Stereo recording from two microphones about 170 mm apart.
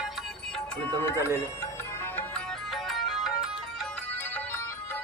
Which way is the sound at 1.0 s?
15° left (ahead or behind).